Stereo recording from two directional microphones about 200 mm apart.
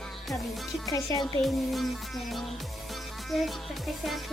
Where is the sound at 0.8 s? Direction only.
15° left (ahead or behind).